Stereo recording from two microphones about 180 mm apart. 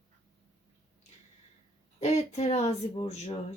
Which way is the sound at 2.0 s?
35° left (ahead or behind).